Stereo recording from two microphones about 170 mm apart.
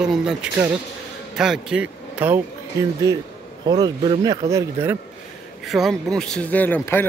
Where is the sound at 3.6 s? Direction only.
30° right (ahead or behind).